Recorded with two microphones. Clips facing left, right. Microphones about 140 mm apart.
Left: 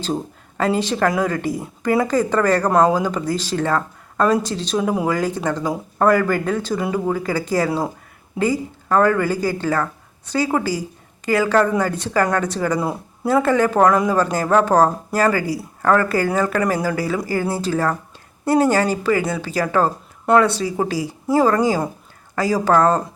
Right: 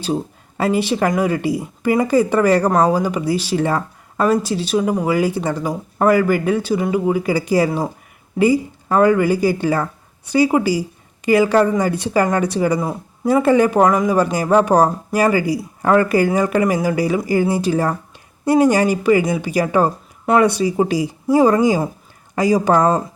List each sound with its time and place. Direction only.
0.0 s speech: 10° right (ahead or behind)